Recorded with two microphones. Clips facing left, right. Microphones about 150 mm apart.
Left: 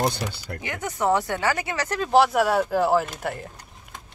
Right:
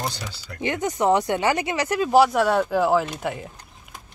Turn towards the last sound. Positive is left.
turn(degrees=0)  # may be behind; listen again after turning